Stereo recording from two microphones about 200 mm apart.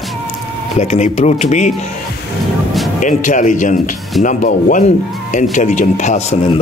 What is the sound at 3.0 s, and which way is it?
Speech, 40° left (ahead or behind).